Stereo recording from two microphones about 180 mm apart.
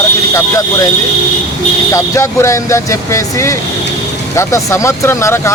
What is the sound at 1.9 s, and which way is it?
Speech, 15° left (ahead or behind).